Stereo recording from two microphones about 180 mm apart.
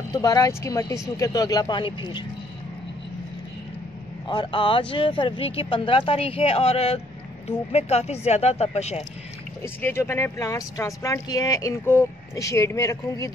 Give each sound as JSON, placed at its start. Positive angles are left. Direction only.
{"t": 0.1, "sound": "speech", "side_deg": 20}
{"t": 4.3, "sound": "speech", "side_deg": 25}
{"t": 9.6, "sound": "speech", "side_deg": 10}